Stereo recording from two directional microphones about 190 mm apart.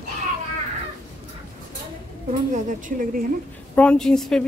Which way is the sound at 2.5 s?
45° right (ahead or behind).